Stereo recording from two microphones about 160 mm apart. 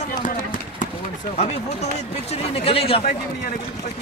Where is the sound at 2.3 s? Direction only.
40° left (ahead or behind).